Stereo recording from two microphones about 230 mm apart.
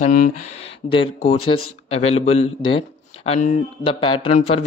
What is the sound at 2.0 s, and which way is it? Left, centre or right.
Speech, left.